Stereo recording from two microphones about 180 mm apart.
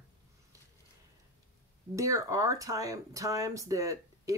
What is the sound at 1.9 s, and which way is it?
Speech, 15° right (ahead or behind).